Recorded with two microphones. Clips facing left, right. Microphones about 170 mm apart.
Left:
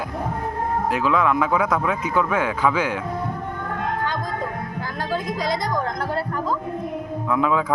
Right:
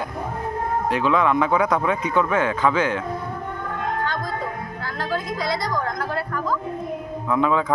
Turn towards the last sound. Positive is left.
turn(degrees=5)  # may be behind; listen again after turning